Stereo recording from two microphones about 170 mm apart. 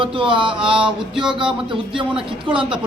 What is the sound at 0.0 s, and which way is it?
Mantra, 30° right (ahead or behind).